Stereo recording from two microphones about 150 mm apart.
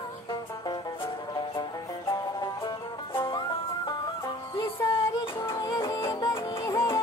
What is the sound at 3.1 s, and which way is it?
Music, 35° left (ahead or behind).